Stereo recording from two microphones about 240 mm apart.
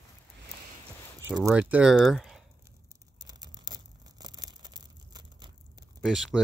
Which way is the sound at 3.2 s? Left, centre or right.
Centre.